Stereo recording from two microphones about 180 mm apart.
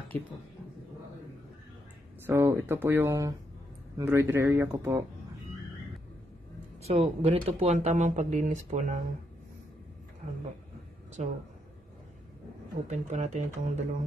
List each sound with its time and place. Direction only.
0.1 s speech: 10° left (ahead or behind)
2.2 s speech: 10° right (ahead or behind)
6.9 s speech: 35° right (ahead or behind)
11.2 s speech: 40° right (ahead or behind)
12.9 s speech: 40° right (ahead or behind)